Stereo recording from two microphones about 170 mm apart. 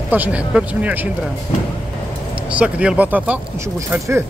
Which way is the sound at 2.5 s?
5° right (ahead or behind).